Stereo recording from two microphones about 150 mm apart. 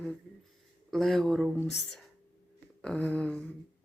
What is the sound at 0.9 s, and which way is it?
Speech, centre (ahead or behind).